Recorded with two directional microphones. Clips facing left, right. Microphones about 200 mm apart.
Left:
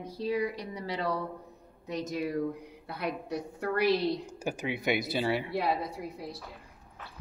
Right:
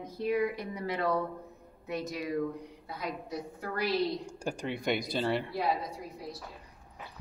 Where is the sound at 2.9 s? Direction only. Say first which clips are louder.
Left 4 dB; 65° left (ahead or behind).